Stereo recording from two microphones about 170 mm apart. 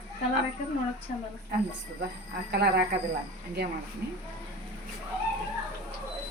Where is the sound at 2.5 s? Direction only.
70° right (ahead or behind).